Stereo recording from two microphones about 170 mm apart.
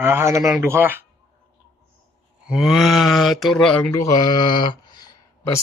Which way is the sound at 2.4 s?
Centre (ahead or behind).